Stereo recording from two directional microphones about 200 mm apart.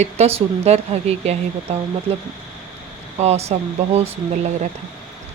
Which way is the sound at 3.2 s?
30° right (ahead or behind).